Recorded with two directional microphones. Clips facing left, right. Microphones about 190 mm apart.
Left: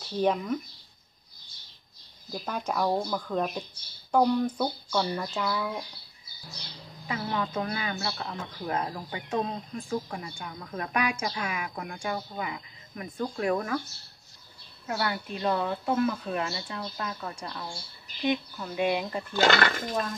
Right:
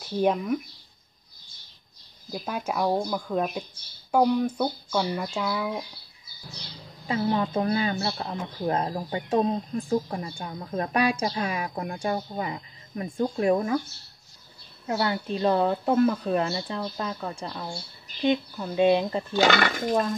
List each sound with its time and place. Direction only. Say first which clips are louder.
0.0 s speech: right 2 dB; 10° right (ahead or behind)
2.3 s speech: right 2 dB; 5° right (ahead or behind)
7.1 s speech: right 6 dB; 30° right (ahead or behind)
14.9 s speech: right 5 dB; 25° right (ahead or behind)
19.4 s speech: right 1 dB; 10° right (ahead or behind)